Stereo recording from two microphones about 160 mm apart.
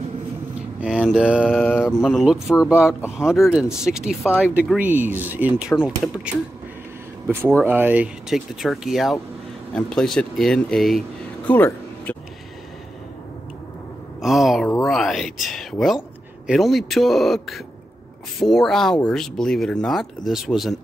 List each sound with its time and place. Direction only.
0.7 s a sound: 5° right (ahead or behind)
1.3 s speech: 5° right (ahead or behind)
1.6 s speech: 10° left (ahead or behind)
2.5 s speech: 15° left (ahead or behind)
3.2 s speech: centre (ahead or behind)
7.6 s speech: 10° right (ahead or behind)
11.5 s a sound: 10° left (ahead or behind)
14.2 s a sound: centre (ahead or behind)
14.9 s speech: centre (ahead or behind)